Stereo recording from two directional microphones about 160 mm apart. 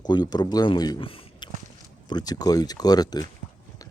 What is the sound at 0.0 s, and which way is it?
Speech, 25° left (ahead or behind).